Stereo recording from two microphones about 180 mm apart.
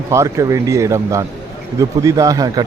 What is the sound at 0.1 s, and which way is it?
A man's voice, 15° right (ahead or behind).